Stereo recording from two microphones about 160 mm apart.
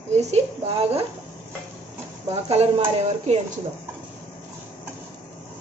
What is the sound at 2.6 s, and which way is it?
Speech, 45° right (ahead or behind).